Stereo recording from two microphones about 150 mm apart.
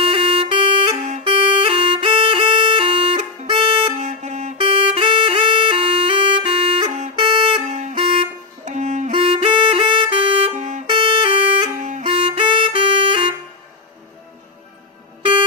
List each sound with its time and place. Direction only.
0.0 s music: 40° right (ahead or behind)
3.9 s wind instrument: 50° right (ahead or behind)
4.6 s music: 40° right (ahead or behind)
7.2 s music: 30° right (ahead or behind)
7.7 s a sound: 50° right (ahead or behind)
7.9 s vehicle horn: 40° right (ahead or behind)
8.6 s music: 50° right (ahead or behind)
9.1 s saxophone: 35° right (ahead or behind)
10.8 s music: 30° right (ahead or behind)
11.8 s music: 50° right (ahead or behind)
12.0 s music: 40° right (ahead or behind)